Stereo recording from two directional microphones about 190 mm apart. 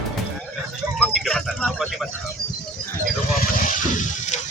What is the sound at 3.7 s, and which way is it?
Water, 40° left (ahead or behind).